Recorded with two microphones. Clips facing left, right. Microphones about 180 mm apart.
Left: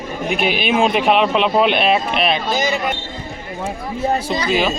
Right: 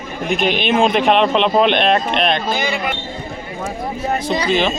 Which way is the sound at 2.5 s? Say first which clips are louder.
Left 2 dB; 40° left (ahead or behind).